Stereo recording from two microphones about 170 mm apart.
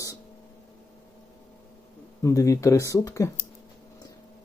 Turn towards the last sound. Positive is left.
turn(degrees=15)  # may be behind; listen again after turning